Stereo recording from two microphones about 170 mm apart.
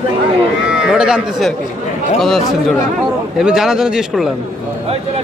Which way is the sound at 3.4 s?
5° right (ahead or behind).